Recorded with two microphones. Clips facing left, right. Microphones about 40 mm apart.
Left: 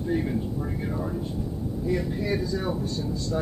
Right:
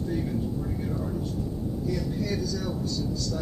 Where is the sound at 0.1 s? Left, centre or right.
Left.